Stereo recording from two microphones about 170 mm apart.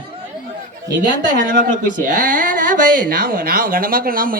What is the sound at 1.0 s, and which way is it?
A woman's voice, 55° right (ahead or behind).